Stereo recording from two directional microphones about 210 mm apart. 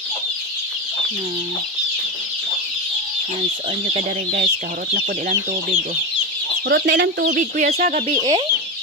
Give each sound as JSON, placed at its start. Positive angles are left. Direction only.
{"t": 3.8, "sound": "speech", "side_deg": -35}
{"t": 6.7, "sound": "chicken", "side_deg": -55}
{"t": 7.2, "sound": "speech", "side_deg": -40}
{"t": 8.2, "sound": "chicken", "side_deg": -20}